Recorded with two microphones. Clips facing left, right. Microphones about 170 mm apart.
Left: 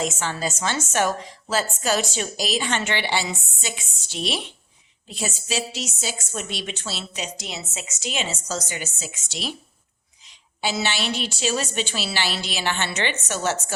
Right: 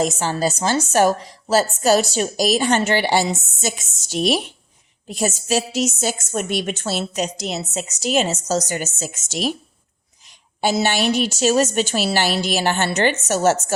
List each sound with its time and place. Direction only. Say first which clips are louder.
0.0 s a woman's voice: right 6 dB; 35° right (ahead or behind)